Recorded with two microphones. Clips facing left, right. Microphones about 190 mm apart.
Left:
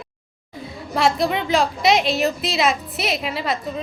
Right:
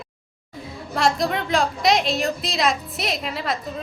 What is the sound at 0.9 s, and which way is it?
A woman's voice, centre (ahead or behind).